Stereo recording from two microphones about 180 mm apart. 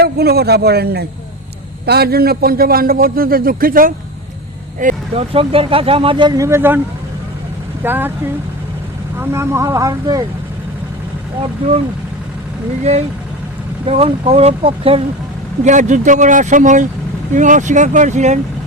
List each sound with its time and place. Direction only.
0.0 s a man's voice: 60° right (ahead or behind)
4.8 s vehicle: 45° right (ahead or behind)
5.3 s speech: 30° right (ahead or behind); by 8.1 s 10° right (ahead or behind)
9.1 s speech: 15° right (ahead or behind)
13.8 s speech: 35° right (ahead or behind)
15.6 s speech: 45° right (ahead or behind)